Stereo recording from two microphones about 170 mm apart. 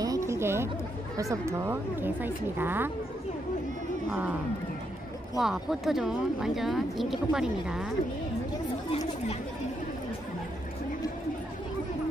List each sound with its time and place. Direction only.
0.0 s a sound: 20° right (ahead or behind)
1.3 s a woman's voice: 15° right (ahead or behind)
4.1 s a woman's voice: 5° right (ahead or behind)
5.4 s speech: centre (ahead or behind)